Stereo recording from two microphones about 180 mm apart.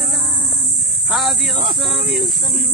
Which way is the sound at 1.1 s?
Centre (ahead or behind).